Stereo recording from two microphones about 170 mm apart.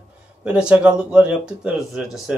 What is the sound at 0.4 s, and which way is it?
Speech, 5° right (ahead or behind).